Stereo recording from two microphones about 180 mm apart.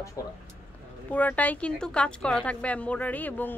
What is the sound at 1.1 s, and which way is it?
Speech, 10° left (ahead or behind).